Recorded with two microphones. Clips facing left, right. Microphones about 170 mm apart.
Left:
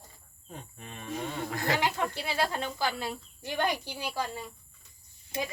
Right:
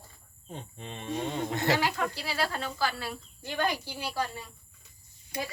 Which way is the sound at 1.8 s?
20° left (ahead or behind).